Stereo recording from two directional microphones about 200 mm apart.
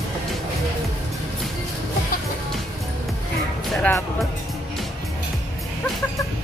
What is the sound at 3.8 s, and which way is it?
Music, 10° left (ahead or behind).